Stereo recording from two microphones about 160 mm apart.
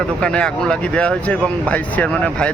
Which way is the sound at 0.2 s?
5° left (ahead or behind).